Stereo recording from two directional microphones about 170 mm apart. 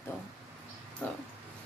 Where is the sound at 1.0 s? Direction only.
10° left (ahead or behind).